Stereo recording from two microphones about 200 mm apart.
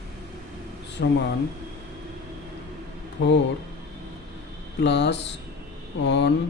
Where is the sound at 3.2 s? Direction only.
70° left (ahead or behind).